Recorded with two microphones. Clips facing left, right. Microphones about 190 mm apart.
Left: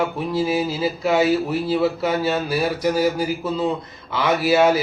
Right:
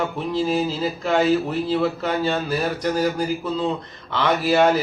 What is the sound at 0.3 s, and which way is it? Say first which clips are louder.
Speech: even; 10° left (ahead or behind).